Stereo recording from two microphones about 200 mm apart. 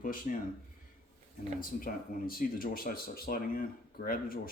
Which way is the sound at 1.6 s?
45° left (ahead or behind).